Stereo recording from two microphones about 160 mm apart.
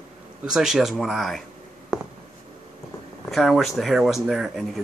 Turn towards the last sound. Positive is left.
turn(degrees=0)  # may be behind; listen again after turning